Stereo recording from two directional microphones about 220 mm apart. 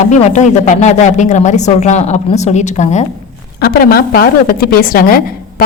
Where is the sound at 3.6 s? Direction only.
40° left (ahead or behind).